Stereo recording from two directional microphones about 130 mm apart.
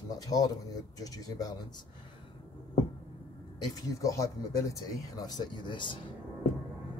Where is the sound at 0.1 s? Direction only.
30° left (ahead or behind).